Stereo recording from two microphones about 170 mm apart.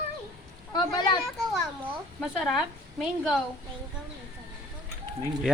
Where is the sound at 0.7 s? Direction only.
25° left (ahead or behind).